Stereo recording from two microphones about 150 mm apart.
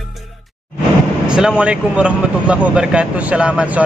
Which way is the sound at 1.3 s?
5° right (ahead or behind).